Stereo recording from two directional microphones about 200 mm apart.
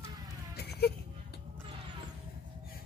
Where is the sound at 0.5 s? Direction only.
55° left (ahead or behind).